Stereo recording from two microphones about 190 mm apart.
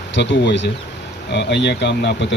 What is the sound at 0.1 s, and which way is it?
Speech, 65° left (ahead or behind).